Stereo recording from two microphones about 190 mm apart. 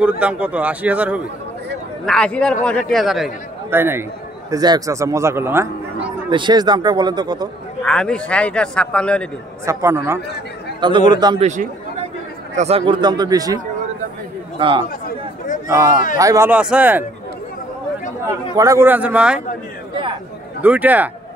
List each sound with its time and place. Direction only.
0.0 s a man's voice: 5° right (ahead or behind)
2.0 s a man's voice: 5° left (ahead or behind)
3.7 s a man's voice: 10° right (ahead or behind)
6.3 s speech: 25° right (ahead or behind)
7.8 s a man's voice: 5° left (ahead or behind)
9.7 s a man's voice: 15° right (ahead or behind)
10.8 s speech: 25° right (ahead or behind)
11.4 s speech: 40° right (ahead or behind); by 13.6 s 20° right (ahead or behind)
14.6 s speech: 25° right (ahead or behind)
15.0 s chatter: 40° left (ahead or behind)
15.7 s a man's voice: 15° right (ahead or behind)
18.5 s a man's voice: 20° right (ahead or behind)
20.6 s a man's voice: 10° right (ahead or behind)